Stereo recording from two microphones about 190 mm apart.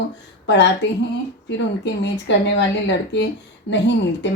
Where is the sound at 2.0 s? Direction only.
65° left (ahead or behind).